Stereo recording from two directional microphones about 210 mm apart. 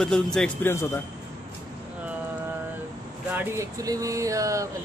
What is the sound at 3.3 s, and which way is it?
Speech, 15° right (ahead or behind).